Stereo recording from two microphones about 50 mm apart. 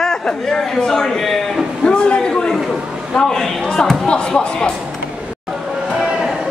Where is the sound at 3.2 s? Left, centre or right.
Centre.